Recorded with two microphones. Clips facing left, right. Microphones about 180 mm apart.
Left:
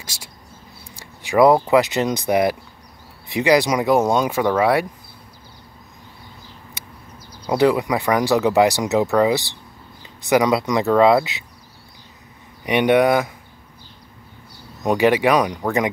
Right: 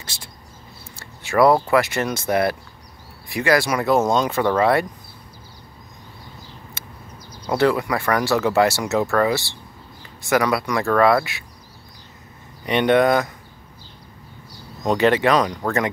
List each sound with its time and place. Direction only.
0.0 s speech: 10° left (ahead or behind)
6.8 s a sound: 15° left (ahead or behind)
7.4 s speech: 15° left (ahead or behind)
12.6 s speech: 10° left (ahead or behind)
14.8 s speech: 10° left (ahead or behind)